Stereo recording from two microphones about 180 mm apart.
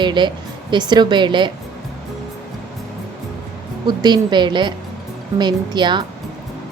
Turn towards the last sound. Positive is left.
turn(degrees=-25)  # may be behind; listen again after turning